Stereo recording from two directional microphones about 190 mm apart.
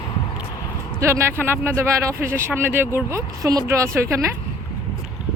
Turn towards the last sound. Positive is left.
turn(degrees=-15)  # may be behind; listen again after turning